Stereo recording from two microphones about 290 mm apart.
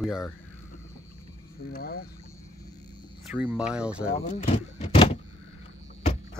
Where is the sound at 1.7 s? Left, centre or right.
Left.